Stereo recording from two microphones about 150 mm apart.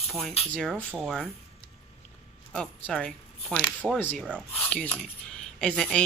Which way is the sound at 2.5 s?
5° left (ahead or behind).